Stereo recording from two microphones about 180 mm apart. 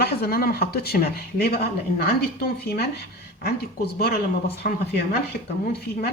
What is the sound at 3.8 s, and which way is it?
Speech, 60° left (ahead or behind).